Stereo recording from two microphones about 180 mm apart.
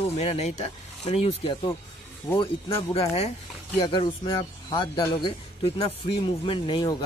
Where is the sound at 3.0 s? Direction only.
35° left (ahead or behind).